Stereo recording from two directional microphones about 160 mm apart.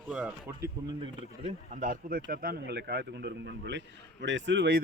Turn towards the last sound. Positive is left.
turn(degrees=-80)